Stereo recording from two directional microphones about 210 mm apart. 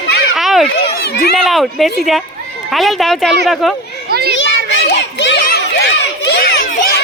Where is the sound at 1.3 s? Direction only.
Centre (ahead or behind).